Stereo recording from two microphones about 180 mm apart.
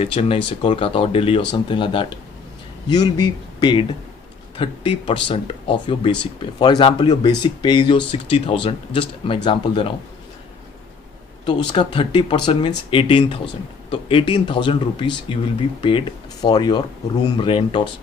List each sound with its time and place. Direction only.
0.0 s speech: 30° left (ahead or behind)
11.4 s speech: 25° left (ahead or behind)